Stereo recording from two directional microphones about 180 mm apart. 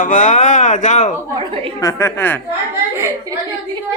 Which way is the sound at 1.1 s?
20° right (ahead or behind).